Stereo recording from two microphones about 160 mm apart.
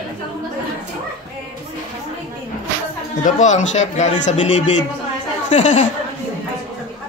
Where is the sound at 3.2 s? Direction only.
50° left (ahead or behind).